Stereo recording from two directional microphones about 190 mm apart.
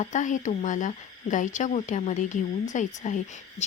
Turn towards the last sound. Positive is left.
turn(degrees=40)  # may be behind; listen again after turning